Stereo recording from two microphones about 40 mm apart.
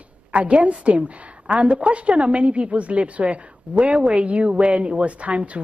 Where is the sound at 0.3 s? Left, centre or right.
Right.